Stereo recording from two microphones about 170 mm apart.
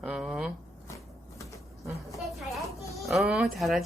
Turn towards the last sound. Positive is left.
turn(degrees=0)  # may be behind; listen again after turning